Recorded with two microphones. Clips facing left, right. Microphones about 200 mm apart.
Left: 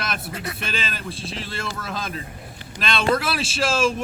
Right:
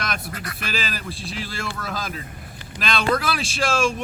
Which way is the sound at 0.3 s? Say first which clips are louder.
Left 3 dB; 25° left (ahead or behind).